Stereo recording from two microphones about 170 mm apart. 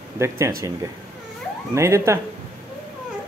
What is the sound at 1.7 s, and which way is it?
Speech, 15° right (ahead or behind).